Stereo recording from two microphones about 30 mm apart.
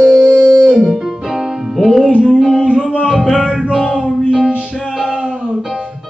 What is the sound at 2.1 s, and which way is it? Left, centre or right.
Music, right.